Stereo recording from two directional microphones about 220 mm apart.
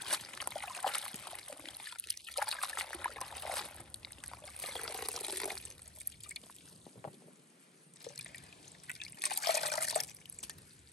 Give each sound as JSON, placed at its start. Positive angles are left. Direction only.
{"t": 0.0, "sound": "trickle", "side_deg": 0}
{"t": 6.3, "sound": "drip", "side_deg": 45}
{"t": 8.0, "sound": "liquid", "side_deg": 0}
{"t": 8.4, "sound": "trickle", "side_deg": 0}
{"t": 9.7, "sound": "water", "side_deg": 0}